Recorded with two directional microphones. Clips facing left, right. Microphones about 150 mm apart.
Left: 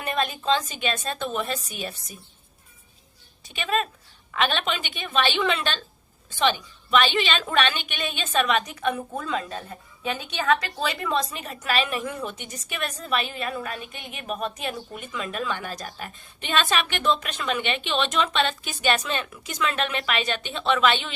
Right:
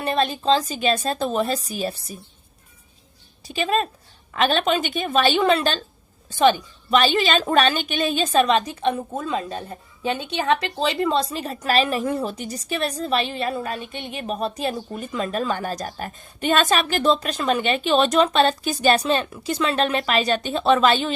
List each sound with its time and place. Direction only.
0.0 s a woman's voice: 35° right (ahead or behind)
3.4 s a woman's voice: 35° right (ahead or behind)